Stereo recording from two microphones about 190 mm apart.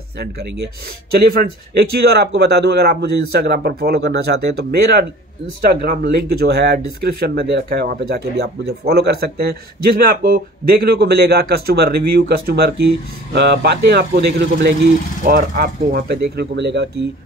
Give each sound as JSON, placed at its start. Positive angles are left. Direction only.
{"t": 0.2, "sound": "speech", "side_deg": -55}
{"t": 15.2, "sound": "speech", "side_deg": -50}
{"t": 16.3, "sound": "speech", "side_deg": -65}